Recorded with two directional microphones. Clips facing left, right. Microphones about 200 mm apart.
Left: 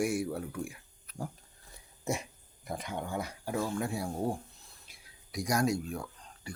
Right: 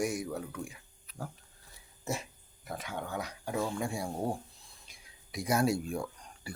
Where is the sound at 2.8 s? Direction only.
15° left (ahead or behind).